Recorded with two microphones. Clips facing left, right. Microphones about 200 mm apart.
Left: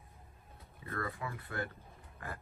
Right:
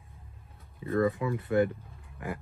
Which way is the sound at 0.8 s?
20° right (ahead or behind).